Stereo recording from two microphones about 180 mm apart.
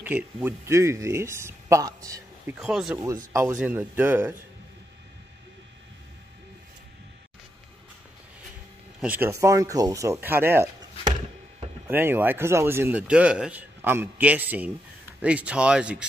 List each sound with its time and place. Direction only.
0.0 s speech: 10° right (ahead or behind)
2.6 s speech: 5° right (ahead or behind)
9.0 s speech: 10° right (ahead or behind)
11.9 s speech: 10° right (ahead or behind)